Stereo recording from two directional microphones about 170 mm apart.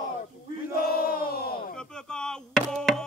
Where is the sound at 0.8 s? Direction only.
60° left (ahead or behind).